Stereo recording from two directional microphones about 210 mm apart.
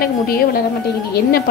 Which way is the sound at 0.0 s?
45° left (ahead or behind).